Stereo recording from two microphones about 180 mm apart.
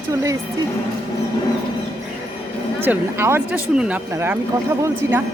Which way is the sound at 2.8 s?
15° right (ahead or behind).